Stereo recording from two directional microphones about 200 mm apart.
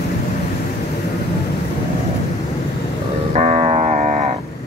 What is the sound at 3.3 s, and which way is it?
Music, 35° right (ahead or behind).